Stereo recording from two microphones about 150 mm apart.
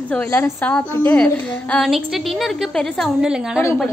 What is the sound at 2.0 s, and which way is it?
A woman's voice, centre (ahead or behind).